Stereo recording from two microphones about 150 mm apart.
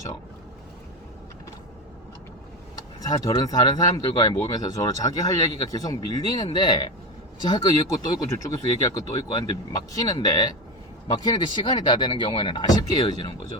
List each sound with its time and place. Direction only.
3.2 s speech: 30° left (ahead or behind)